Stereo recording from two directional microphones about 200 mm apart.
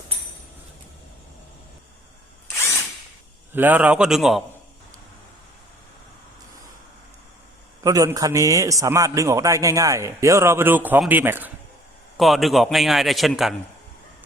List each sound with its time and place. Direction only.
3.5 s a man's voice: 10° right (ahead or behind)
7.9 s a man's voice: 15° right (ahead or behind); by 13.6 s centre (ahead or behind)